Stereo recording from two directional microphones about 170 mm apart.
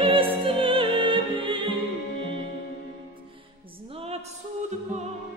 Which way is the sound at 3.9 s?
35° right (ahead or behind).